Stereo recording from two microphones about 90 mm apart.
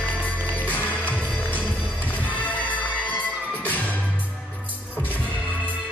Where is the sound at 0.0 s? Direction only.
15° left (ahead or behind).